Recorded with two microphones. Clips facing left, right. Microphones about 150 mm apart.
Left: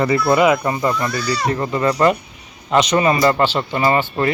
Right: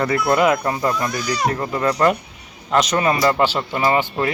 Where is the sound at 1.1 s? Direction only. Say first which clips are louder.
Left 1 dB; 15° right (ahead or behind).